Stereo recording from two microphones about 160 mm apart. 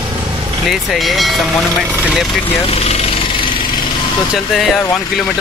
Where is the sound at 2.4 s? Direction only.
35° left (ahead or behind).